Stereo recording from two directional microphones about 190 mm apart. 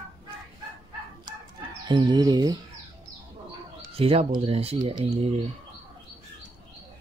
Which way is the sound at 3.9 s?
30° right (ahead or behind).